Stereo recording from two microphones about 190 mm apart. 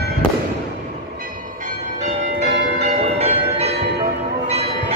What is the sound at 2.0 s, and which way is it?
Change ringing, 40° right (ahead or behind).